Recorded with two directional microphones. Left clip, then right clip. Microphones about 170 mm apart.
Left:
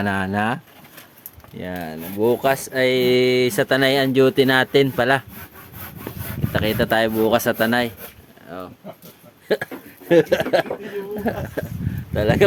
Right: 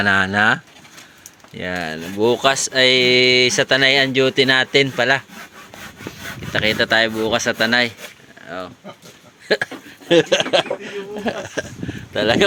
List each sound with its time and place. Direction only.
0.0 s speech: 5° left (ahead or behind)
2.4 s speech: 15° left (ahead or behind)
6.5 s speech: 30° left (ahead or behind)
8.4 s speech: centre (ahead or behind)
10.1 s speech: 15° left (ahead or behind)
11.9 s speech: centre (ahead or behind)